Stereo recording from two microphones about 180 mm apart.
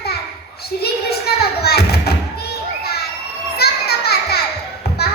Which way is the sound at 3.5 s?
60° left (ahead or behind).